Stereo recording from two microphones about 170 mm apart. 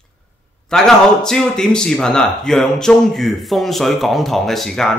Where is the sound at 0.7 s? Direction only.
5° left (ahead or behind).